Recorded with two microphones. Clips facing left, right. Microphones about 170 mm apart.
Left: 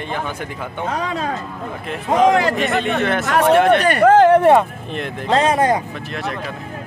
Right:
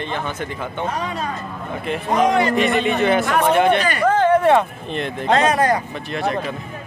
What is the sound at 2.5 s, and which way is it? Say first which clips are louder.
Speech: right 1 dB; centre (ahead or behind).